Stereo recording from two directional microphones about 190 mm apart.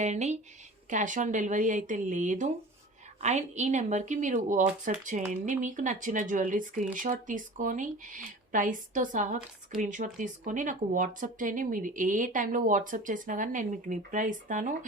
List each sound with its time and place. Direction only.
0.0 s speech: 35° right (ahead or behind)